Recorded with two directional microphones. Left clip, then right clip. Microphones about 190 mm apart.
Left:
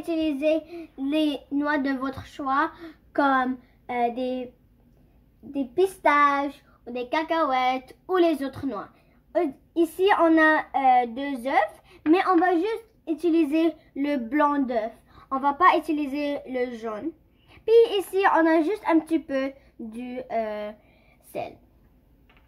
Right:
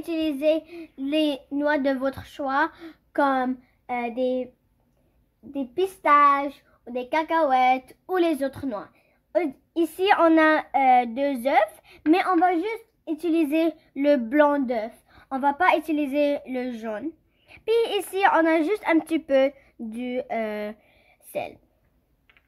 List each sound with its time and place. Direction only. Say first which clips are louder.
0.0 s a woman's voice: right 1 dB; 35° right (ahead or behind)
5.5 s a woman's voice: left 3 dB; 30° right (ahead or behind); by 8.8 s 45° right (ahead or behind)
9.9 s a woman's voice: right 1 dB; 40° right (ahead or behind)